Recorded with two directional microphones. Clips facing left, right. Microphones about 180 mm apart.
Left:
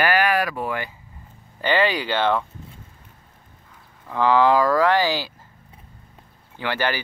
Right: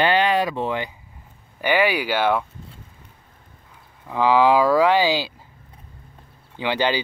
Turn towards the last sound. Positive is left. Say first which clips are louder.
# right 3 dB
turn(degrees=-15)  # may be behind; listen again after turning